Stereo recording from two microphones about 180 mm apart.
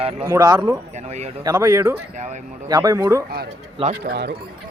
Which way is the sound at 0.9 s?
35° right (ahead or behind).